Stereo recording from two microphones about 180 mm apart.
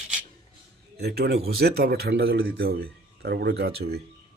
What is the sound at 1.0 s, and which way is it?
Speech, 65° right (ahead or behind).